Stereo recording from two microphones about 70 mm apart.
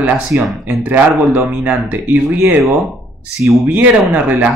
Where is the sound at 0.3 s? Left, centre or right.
Right.